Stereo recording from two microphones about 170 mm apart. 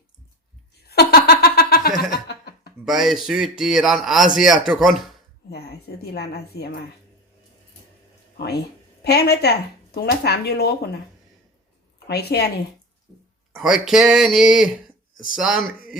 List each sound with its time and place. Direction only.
0.9 s laughter: 70° left (ahead or behind)
2.0 s chuckle: 75° left (ahead or behind)
2.8 s a man's voice: centre (ahead or behind)
5.5 s speech: 70° left (ahead or behind)
8.4 s speech: 75° left (ahead or behind)
12.0 s speech: 75° left (ahead or behind)
13.6 s a man's voice: centre (ahead or behind)